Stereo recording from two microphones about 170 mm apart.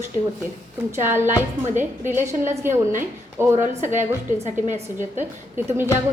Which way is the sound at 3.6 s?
45° right (ahead or behind).